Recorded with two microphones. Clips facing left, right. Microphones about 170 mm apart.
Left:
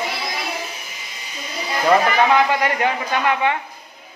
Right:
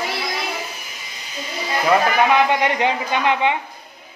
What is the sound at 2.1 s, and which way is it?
Speech, 20° right (ahead or behind).